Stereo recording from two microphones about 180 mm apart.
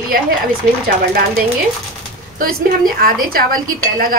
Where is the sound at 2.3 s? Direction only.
55° right (ahead or behind).